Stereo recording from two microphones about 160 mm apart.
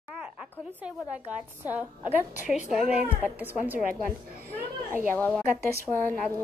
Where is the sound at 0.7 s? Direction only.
10° right (ahead or behind).